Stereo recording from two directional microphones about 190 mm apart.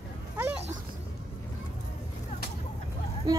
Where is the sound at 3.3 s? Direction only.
20° right (ahead or behind).